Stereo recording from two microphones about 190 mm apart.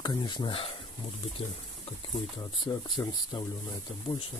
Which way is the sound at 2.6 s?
20° left (ahead or behind).